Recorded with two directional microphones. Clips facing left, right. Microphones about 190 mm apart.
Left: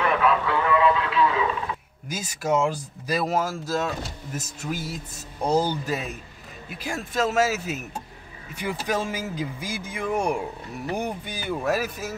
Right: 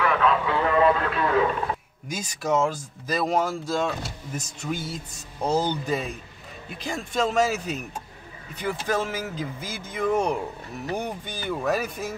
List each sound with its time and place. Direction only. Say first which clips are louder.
0.7 s a man's voice: right 1 dB; 45° right (ahead or behind)
2.0 s speech: left 1 dB; 5° left (ahead or behind)